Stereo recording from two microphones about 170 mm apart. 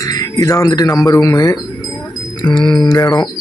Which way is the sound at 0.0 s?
20° left (ahead or behind).